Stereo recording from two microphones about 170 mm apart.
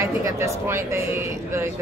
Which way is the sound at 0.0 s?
15° right (ahead or behind).